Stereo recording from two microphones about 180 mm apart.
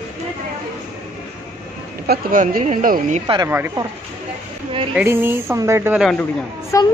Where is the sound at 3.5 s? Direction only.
10° right (ahead or behind).